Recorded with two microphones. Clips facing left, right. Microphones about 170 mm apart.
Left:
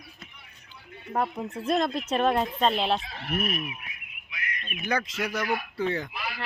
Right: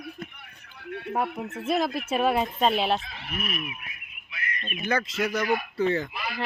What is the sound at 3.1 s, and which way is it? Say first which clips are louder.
Speech: left 4 dB; 50° left (ahead or behind).